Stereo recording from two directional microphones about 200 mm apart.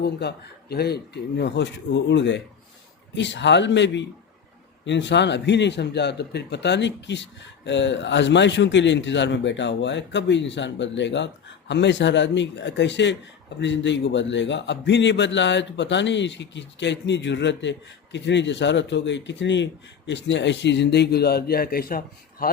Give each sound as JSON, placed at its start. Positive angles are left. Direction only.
{"t": 0.0, "sound": "a man's voice", "side_deg": 55}